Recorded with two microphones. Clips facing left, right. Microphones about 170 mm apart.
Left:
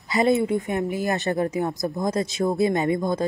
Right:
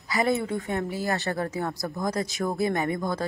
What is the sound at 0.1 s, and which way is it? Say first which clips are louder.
Speech: left 5 dB; 20° left (ahead or behind).